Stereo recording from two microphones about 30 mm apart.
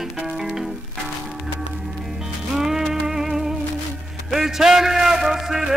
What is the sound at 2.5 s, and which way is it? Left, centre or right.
Music, centre.